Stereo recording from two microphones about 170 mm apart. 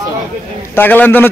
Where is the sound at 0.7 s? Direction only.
10° left (ahead or behind).